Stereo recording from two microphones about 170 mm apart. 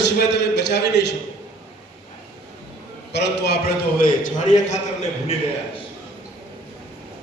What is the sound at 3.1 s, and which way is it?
A man's voice, 75° left (ahead or behind).